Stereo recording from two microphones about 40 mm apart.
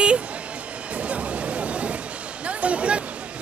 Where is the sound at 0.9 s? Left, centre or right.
Right.